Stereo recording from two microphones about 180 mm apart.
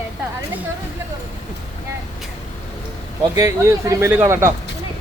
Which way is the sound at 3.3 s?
15° right (ahead or behind).